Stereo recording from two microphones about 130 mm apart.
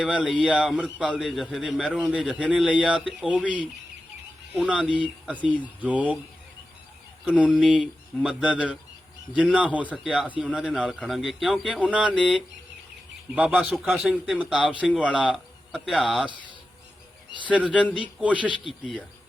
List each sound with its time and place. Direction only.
0.0 s a man's voice: 5° right (ahead or behind)
7.3 s a man's voice: 10° right (ahead or behind)
12.1 s speech: 10° left (ahead or behind)
13.3 s speech: 10° right (ahead or behind)
17.4 s speech: 10° right (ahead or behind)